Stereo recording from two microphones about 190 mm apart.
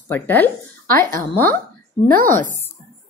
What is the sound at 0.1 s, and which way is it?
Speech, 10° left (ahead or behind).